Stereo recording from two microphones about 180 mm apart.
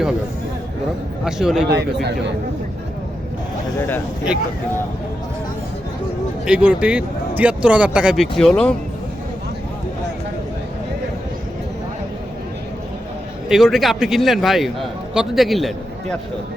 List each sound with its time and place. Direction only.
1.2 s a man's voice: 5° right (ahead or behind)
1.7 s speech: 65° right (ahead or behind)
3.8 s a man's voice: 10° left (ahead or behind)
6.4 s a man's voice: 5° right (ahead or behind)
13.5 s a man's voice: centre (ahead or behind)